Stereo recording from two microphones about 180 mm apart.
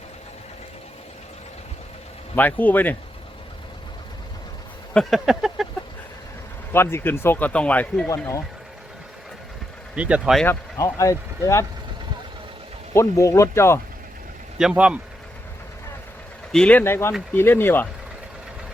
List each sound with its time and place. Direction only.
2.3 s speech: 10° left (ahead or behind)
4.9 s speech: centre (ahead or behind)
6.7 s speech: 15° left (ahead or behind)
9.9 s speech: 5° right (ahead or behind)
10.4 s speech: 15° left (ahead or behind)
12.9 s speech: 15° left (ahead or behind)
14.6 s speech: 5° right (ahead or behind)
16.5 s speech: 5° left (ahead or behind)